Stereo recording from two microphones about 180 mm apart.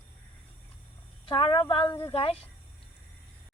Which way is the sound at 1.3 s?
30° left (ahead or behind).